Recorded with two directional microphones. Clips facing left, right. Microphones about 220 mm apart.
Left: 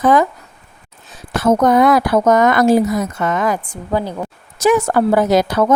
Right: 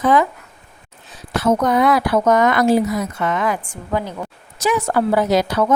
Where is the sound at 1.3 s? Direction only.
50° left (ahead or behind).